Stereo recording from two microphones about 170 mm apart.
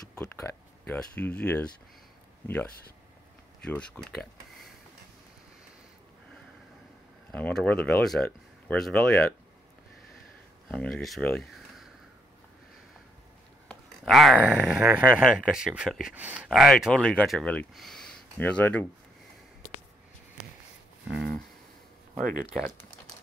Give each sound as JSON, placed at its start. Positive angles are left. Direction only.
{"t": 0.4, "sound": "a sound", "side_deg": 15}
{"t": 0.9, "sound": "speech", "side_deg": 10}
{"t": 7.2, "sound": "speech", "side_deg": 5}
{"t": 10.7, "sound": "speech", "side_deg": 5}
{"t": 13.7, "sound": "speech", "side_deg": 0}
{"t": 21.1, "sound": "speech", "side_deg": -5}
{"t": 22.2, "sound": "speech", "side_deg": -55}